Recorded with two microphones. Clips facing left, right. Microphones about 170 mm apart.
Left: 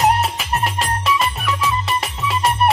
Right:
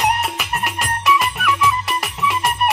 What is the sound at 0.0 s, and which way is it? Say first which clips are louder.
Music: left 3 dB; 30° left (ahead or behind).